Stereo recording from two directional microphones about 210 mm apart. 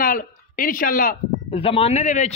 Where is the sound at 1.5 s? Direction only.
25° left (ahead or behind).